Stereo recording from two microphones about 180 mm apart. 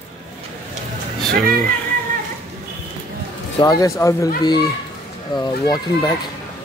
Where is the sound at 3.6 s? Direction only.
20° left (ahead or behind).